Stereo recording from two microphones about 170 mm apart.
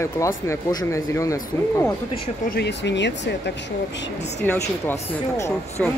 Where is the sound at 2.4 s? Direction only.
80° left.